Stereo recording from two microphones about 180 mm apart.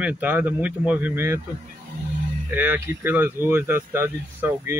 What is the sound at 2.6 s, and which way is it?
Speech, 10° right (ahead or behind).